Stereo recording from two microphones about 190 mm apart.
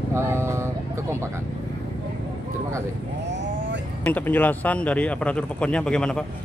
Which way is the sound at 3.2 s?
70° right (ahead or behind).